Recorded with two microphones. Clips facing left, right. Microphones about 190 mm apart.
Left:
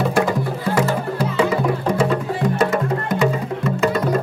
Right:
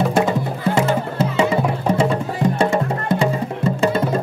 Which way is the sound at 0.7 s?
25° right (ahead or behind).